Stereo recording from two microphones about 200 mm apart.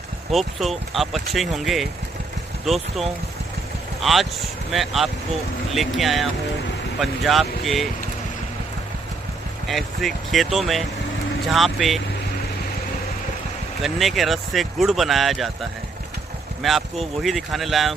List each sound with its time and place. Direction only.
0.3 s speech: centre (ahead or behind)
9.7 s speech: centre (ahead or behind)
13.8 s speech: centre (ahead or behind)
16.6 s speech: centre (ahead or behind)